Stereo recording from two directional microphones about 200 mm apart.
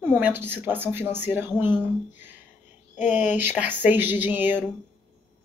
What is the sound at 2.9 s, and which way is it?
Speech, 35° left (ahead or behind).